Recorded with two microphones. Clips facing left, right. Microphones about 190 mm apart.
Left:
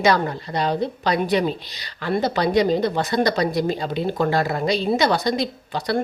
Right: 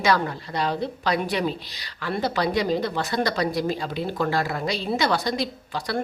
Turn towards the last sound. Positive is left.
turn(degrees=20)  # may be behind; listen again after turning